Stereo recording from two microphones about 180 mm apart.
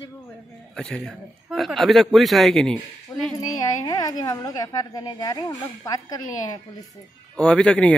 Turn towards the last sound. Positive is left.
turn(degrees=5)  # may be behind; listen again after turning